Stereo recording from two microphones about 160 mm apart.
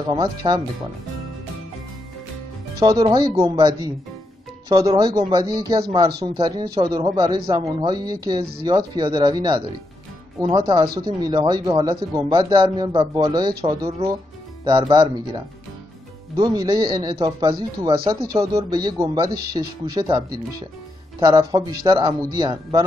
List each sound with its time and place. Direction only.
0.1 s speech: 25° right (ahead or behind)
2.8 s speech: 25° right (ahead or behind)